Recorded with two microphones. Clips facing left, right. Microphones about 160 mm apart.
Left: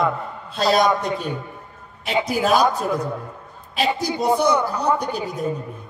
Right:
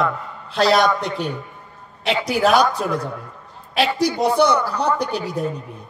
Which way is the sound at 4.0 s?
75° right (ahead or behind).